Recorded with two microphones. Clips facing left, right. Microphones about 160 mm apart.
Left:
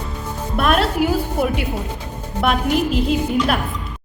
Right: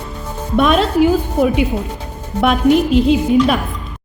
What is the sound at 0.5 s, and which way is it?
A woman's voice, 5° left (ahead or behind).